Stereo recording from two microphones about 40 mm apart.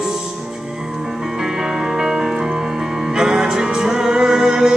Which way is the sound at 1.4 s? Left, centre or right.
Centre.